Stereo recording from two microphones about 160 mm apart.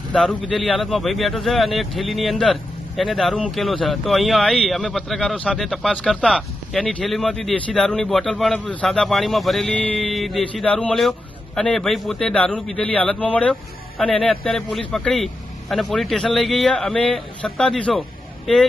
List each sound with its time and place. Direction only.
0.1 s speech: 5° left (ahead or behind)